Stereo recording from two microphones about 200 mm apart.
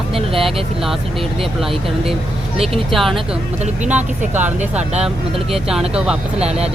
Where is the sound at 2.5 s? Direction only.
30° right (ahead or behind).